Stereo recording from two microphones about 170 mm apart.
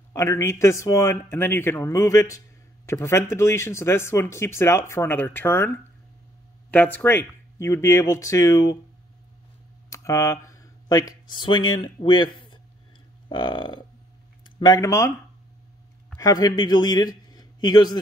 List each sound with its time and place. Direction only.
0.1 s speech: 15° left (ahead or behind)
9.8 s speech: 20° left (ahead or behind)
16.2 s a man's voice: 20° left (ahead or behind)